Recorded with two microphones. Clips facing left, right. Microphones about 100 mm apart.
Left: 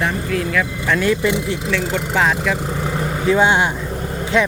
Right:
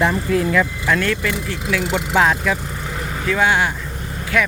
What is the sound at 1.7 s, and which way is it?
Speech, 5° right (ahead or behind).